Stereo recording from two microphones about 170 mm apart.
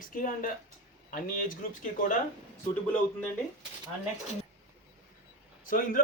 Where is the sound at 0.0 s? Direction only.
50° left (ahead or behind).